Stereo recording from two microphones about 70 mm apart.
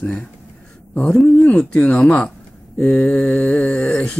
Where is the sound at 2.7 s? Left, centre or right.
Centre.